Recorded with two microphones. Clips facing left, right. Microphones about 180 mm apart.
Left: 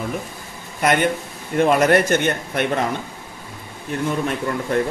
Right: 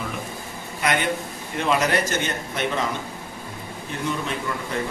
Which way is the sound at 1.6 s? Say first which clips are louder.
Left 7 dB; 50° left (ahead or behind).